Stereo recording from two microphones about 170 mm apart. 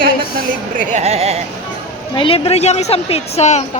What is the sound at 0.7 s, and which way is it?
Speech, 50° right (ahead or behind).